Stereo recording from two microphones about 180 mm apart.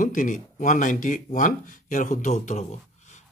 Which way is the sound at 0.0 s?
45° left (ahead or behind).